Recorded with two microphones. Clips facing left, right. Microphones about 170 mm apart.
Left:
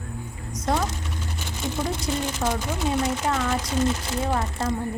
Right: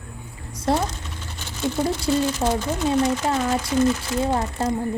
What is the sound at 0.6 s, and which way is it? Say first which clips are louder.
Speech: right 3 dB; 30° right (ahead or behind).